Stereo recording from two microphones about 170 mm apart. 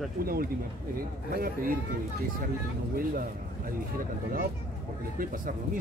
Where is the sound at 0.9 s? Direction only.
60° right (ahead or behind).